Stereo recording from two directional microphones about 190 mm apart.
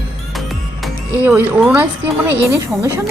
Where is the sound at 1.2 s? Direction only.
10° right (ahead or behind).